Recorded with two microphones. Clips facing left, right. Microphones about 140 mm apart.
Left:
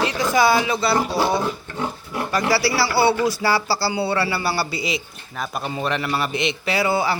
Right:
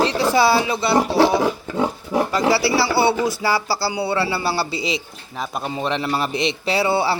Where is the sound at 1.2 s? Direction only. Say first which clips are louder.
Right 5 dB; 90° right.